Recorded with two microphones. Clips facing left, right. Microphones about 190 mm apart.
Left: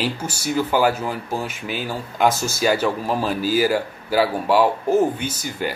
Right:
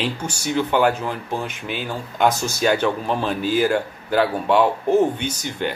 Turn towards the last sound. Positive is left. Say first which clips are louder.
# right 1 dB
turn(degrees=5)  # may be behind; listen again after turning